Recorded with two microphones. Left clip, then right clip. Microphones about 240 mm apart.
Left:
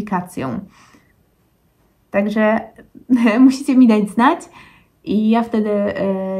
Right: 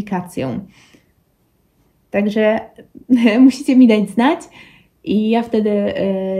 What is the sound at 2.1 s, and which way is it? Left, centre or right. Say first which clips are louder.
Speech: right 1 dB; centre.